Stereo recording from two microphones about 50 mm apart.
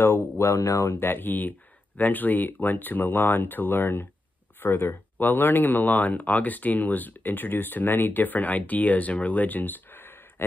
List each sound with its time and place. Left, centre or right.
0.0 s speech: left
0.9 s speech: left